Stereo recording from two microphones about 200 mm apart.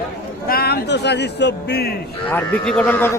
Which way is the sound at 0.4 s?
50° left (ahead or behind).